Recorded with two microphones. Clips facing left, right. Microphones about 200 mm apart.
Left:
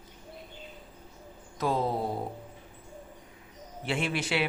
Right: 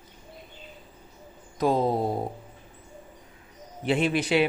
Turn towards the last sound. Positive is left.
turn(degrees=-20)  # may be behind; listen again after turning